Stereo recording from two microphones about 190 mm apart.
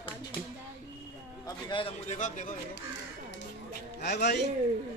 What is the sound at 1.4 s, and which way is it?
Speech, 20° left (ahead or behind).